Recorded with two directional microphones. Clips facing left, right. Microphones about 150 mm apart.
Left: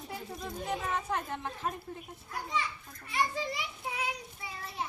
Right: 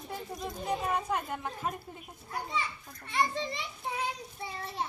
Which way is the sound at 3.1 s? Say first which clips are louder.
Right 1 dB; 30° right (ahead or behind).